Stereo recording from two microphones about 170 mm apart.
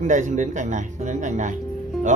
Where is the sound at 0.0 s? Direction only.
45° right (ahead or behind).